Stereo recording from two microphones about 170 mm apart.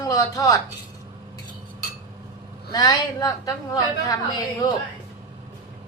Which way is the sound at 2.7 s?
25° left (ahead or behind).